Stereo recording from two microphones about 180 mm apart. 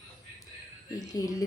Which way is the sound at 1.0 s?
20° left (ahead or behind).